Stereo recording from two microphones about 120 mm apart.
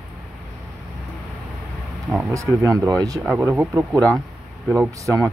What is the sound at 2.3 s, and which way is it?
Speech, 25° right (ahead or behind).